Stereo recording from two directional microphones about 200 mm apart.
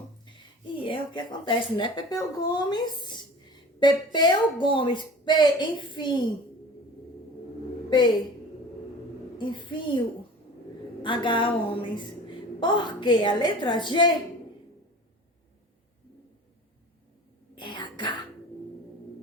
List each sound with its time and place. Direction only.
0.8 s a woman's voice: 25° left (ahead or behind)
7.9 s a woman's voice: 25° left (ahead or behind)
9.4 s a woman's voice: 25° left (ahead or behind)
11.0 s a woman's voice: 25° left (ahead or behind)
17.5 s a sound: 25° left (ahead or behind)